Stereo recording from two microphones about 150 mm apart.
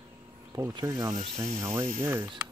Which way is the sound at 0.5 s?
25° right (ahead or behind).